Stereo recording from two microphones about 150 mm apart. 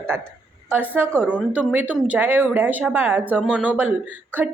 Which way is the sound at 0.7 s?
10° right (ahead or behind).